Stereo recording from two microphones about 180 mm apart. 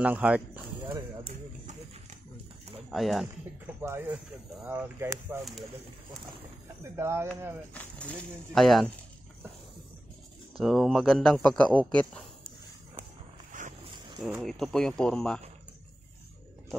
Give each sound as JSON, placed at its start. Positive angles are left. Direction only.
{"t": 0.0, "sound": "speech", "side_deg": -10}
{"t": 1.2, "sound": "horse", "side_deg": -40}
{"t": 2.9, "sound": "speech", "side_deg": 0}
{"t": 3.8, "sound": "speech", "side_deg": -15}
{"t": 6.8, "sound": "speech", "side_deg": -15}
{"t": 7.7, "sound": "a man's voice", "side_deg": 5}
{"t": 10.6, "sound": "a man's voice", "side_deg": 0}
{"t": 13.5, "sound": "boat", "side_deg": -45}
{"t": 14.4, "sound": "a man's voice", "side_deg": 0}